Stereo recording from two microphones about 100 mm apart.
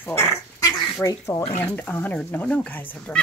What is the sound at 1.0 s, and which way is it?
Speech, 35° left (ahead or behind).